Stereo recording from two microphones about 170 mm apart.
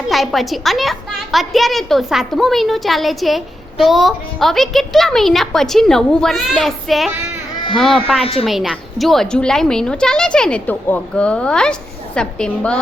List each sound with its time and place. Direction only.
0.1 s a woman's voice: centre (ahead or behind)
8.2 s a woman's voice: 35° left (ahead or behind)
8.4 s a woman's voice: centre (ahead or behind)